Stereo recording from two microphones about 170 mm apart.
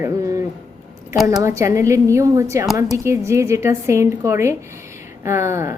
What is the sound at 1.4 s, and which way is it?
A woman's voice, 20° right (ahead or behind).